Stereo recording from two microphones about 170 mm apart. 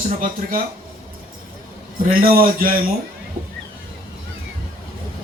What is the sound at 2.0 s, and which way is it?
Speech, 55° right (ahead or behind).